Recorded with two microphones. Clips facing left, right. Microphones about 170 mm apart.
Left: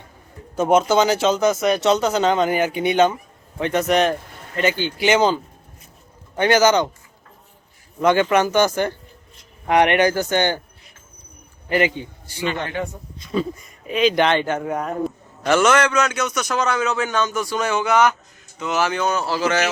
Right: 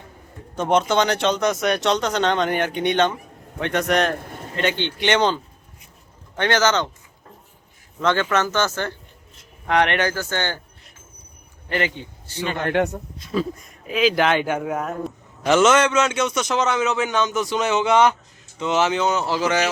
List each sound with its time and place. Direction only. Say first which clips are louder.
0.5 s speech: left 3 dB; 5° left (ahead or behind)
7.9 s speech: left 4 dB; 15° left (ahead or behind)
11.9 s a man's voice: left 1 dB; 10° left (ahead or behind)
12.6 s speech: right 6 dB; 75° right (ahead or behind)
13.1 s speech: left 2 dB; centre (ahead or behind)
15.4 s a man's voice: right 1 dB; 20° right (ahead or behind)